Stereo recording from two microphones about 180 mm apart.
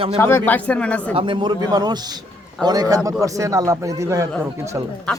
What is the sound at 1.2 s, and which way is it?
A man's voice, 25° right (ahead or behind).